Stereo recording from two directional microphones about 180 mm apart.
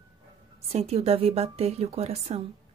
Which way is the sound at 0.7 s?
35° right (ahead or behind).